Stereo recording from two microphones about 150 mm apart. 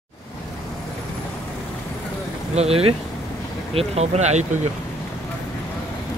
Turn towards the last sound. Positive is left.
turn(degrees=-50)  # may be behind; listen again after turning